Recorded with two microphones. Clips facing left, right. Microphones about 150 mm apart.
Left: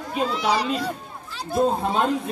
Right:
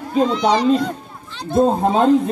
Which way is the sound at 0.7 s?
10° left (ahead or behind).